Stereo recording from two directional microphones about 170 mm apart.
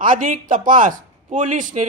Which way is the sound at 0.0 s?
50° right (ahead or behind).